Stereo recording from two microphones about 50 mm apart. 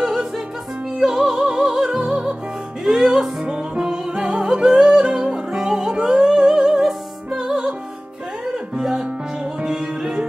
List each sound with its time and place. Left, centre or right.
0.0 s music: centre
7.4 s music: centre
8.7 s music: centre